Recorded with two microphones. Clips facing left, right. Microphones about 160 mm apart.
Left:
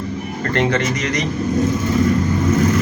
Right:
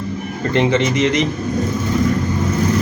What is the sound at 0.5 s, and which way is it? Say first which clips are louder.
Speech: right 3 dB; 20° right (ahead or behind).